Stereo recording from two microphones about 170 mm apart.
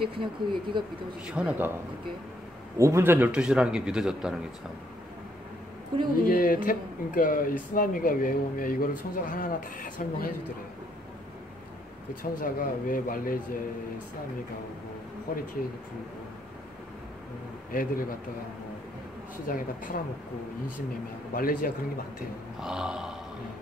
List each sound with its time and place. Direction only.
0.0 s speech: 30° right (ahead or behind)
1.2 s speech: 5° right (ahead or behind)
2.8 s speech: 15° right (ahead or behind)
5.9 s speech: 30° right (ahead or behind)
6.2 s speech: 55° left (ahead or behind)
12.2 s speech: 55° left (ahead or behind)
15.3 s speech: 60° left (ahead or behind)
17.6 s speech: 55° left (ahead or behind)
19.4 s speech: 55° left (ahead or behind)
21.3 s speech: 60° left (ahead or behind)
22.6 s speech: 5° right (ahead or behind)